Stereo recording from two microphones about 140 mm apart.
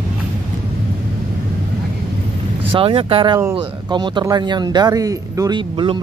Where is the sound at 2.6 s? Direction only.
40° right (ahead or behind).